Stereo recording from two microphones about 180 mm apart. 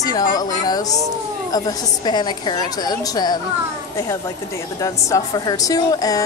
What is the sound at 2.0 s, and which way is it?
A woman's voice, 25° left (ahead or behind).